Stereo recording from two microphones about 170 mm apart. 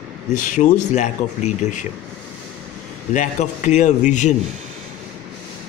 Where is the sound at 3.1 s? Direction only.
45° left (ahead or behind).